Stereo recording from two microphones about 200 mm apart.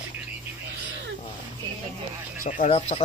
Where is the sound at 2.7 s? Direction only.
35° left (ahead or behind).